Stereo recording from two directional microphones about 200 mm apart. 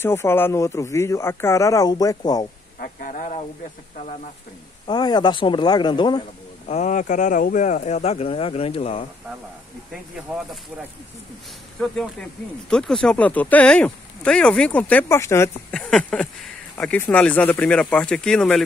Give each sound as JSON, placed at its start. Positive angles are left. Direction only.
{"t": 0.0, "sound": "speech", "side_deg": 10}
{"t": 2.8, "sound": "a sound", "side_deg": 40}
{"t": 4.8, "sound": "speech", "side_deg": 20}
{"t": 6.7, "sound": "speech", "side_deg": 40}
{"t": 11.8, "sound": "speech", "side_deg": 0}